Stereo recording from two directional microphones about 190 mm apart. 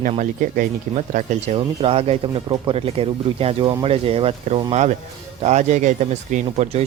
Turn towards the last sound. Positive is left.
turn(degrees=-40)  # may be behind; listen again after turning